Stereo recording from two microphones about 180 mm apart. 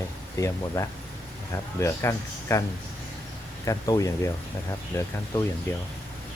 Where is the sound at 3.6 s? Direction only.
20° left (ahead or behind).